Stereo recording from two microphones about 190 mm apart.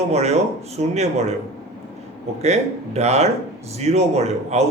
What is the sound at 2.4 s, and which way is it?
Speech, 35° right (ahead or behind).